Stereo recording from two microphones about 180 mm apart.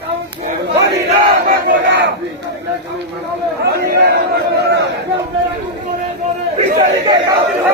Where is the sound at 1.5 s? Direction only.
90° right.